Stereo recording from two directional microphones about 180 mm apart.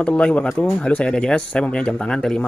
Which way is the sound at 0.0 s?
5° left (ahead or behind).